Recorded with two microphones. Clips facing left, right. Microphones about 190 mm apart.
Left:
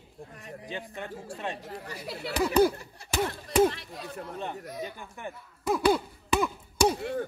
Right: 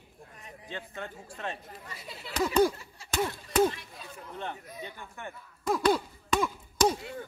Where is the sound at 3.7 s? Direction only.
70° left (ahead or behind).